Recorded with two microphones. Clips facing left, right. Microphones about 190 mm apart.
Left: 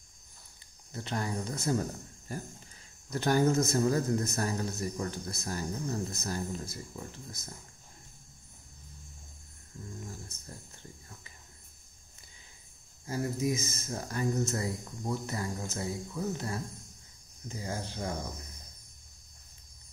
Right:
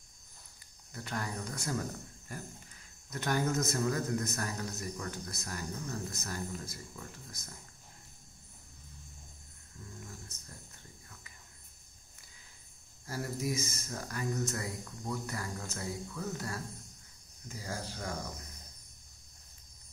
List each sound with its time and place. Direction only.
0.9 s a man's voice: 25° left (ahead or behind)
10.4 s a sound: 30° left (ahead or behind)
13.0 s a man's voice: 20° left (ahead or behind)